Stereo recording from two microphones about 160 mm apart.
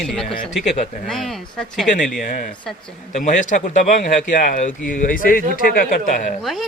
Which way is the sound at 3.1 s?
50° left (ahead or behind).